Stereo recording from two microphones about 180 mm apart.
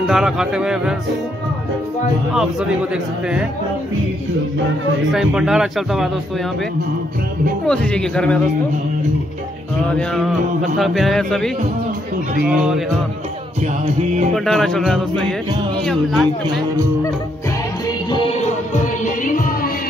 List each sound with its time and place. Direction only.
0.0 s speech: 5° right (ahead or behind)
5.1 s speech: 5° right (ahead or behind)
7.6 s speech: 5° left (ahead or behind)
9.8 s speech: 5° left (ahead or behind)
13.9 s music: 40° right (ahead or behind)
14.3 s speech: centre (ahead or behind)
19.2 s music: 45° left (ahead or behind)